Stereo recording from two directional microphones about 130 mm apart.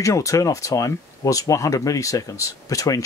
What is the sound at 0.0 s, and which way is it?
Speech, 25° left (ahead or behind).